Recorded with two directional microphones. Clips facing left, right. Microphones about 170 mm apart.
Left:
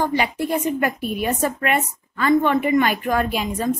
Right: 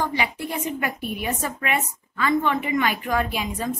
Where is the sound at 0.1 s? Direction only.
45° left (ahead or behind).